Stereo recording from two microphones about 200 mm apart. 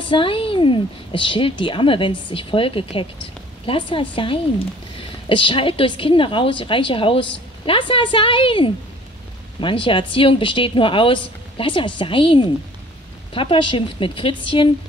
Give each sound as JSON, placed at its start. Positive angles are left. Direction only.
{"t": 0.0, "sound": "a woman's voice", "side_deg": 25}